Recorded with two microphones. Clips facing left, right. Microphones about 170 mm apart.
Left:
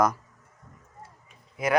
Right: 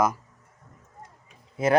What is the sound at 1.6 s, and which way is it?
Speech, 30° right (ahead or behind).